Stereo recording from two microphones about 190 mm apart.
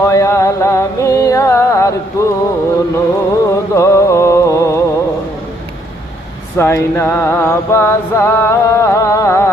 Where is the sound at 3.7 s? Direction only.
15° left (ahead or behind).